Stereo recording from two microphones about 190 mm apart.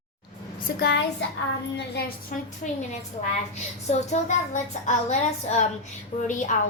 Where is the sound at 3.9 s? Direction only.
35° left (ahead or behind).